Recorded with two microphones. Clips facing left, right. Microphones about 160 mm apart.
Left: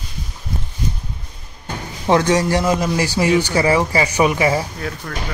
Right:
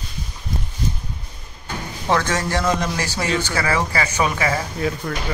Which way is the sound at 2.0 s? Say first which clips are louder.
Left 6 dB; 15° left (ahead or behind).